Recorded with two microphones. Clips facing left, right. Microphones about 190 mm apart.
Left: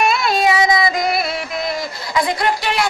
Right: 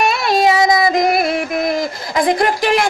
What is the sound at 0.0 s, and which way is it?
Music, 35° right (ahead or behind).